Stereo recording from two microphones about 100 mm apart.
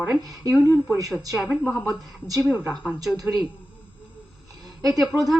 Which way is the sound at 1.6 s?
10° left (ahead or behind).